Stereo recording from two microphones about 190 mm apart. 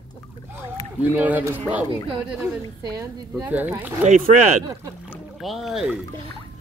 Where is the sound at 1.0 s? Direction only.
10° right (ahead or behind).